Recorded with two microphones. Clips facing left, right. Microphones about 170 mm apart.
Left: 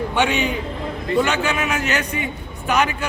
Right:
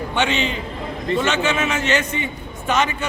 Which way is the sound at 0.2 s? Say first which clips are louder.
Left 1 dB; 5° left (ahead or behind).